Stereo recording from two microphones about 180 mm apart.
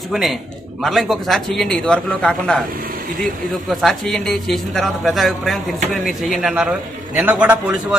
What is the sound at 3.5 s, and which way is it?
A man's voice, centre (ahead or behind).